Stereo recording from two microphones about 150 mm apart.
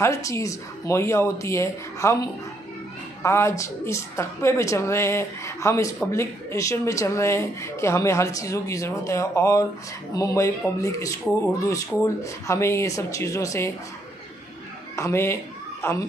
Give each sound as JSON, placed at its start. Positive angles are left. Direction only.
{"t": 0.0, "sound": "speech", "side_deg": 20}
{"t": 3.2, "sound": "speech", "side_deg": 15}
{"t": 15.0, "sound": "speech", "side_deg": 20}